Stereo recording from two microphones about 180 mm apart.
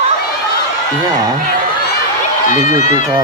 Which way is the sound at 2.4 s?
40° left (ahead or behind).